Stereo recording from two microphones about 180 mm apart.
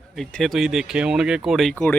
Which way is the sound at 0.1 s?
5° left (ahead or behind).